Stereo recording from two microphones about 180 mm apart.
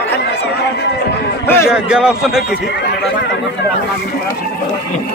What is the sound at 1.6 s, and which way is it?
Speech, 5° right (ahead or behind).